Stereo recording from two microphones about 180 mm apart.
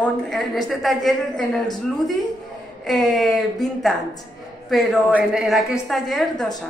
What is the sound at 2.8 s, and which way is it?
Speech, centre (ahead or behind).